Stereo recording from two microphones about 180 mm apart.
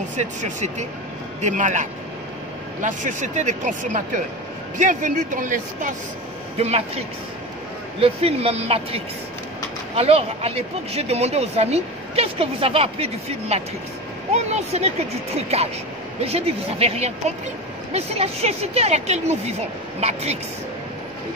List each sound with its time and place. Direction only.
0.1 s speech: 40° right (ahead or behind)
6.6 s speech: 35° right (ahead or behind)